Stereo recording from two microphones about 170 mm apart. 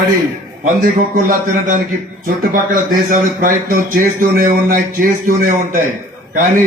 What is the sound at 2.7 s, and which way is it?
A man's voice, 55° right (ahead or behind).